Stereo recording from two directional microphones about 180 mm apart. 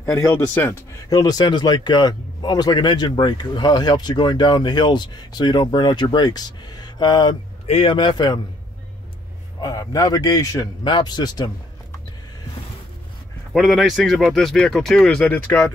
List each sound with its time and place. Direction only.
0.0 s speech: 15° left (ahead or behind)
9.6 s speech: 20° left (ahead or behind)
13.5 s speech: centre (ahead or behind)